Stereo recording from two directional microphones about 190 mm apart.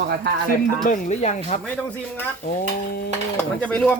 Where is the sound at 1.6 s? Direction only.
10° left (ahead or behind).